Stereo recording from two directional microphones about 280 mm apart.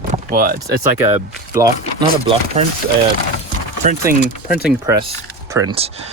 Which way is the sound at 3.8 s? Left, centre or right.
Right.